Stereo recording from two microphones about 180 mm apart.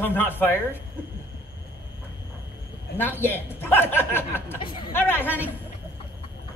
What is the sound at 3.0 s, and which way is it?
Speech, 10° left (ahead or behind).